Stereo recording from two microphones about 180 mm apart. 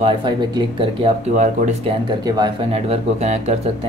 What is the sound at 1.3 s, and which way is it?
Speech, 40° right (ahead or behind).